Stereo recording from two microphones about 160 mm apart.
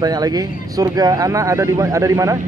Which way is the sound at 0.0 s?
25° right (ahead or behind).